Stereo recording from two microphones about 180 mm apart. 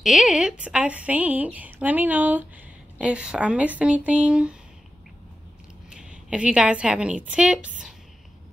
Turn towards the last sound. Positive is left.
turn(degrees=-5)  # may be behind; listen again after turning